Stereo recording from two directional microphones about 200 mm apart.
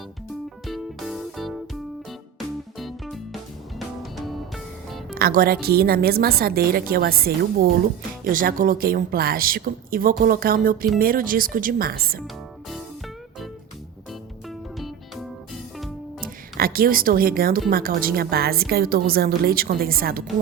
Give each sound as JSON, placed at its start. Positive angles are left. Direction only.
{"t": 0.7, "sound": "music", "side_deg": 0}
{"t": 2.7, "sound": "music", "side_deg": 0}
{"t": 5.1, "sound": "a woman's voice", "side_deg": -45}
{"t": 14.8, "sound": "music", "side_deg": 0}
{"t": 16.2, "sound": "a woman's voice", "side_deg": -45}